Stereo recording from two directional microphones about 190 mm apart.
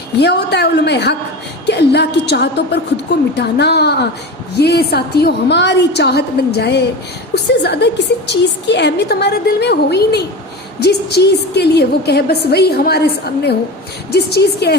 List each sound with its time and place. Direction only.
0.2 s a woman's voice: 60° left (ahead or behind)